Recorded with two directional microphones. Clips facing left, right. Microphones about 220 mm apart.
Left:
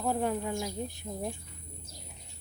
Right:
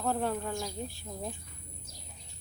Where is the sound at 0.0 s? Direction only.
15° left (ahead or behind).